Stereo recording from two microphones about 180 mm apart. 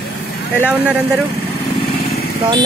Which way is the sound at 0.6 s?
10° right (ahead or behind).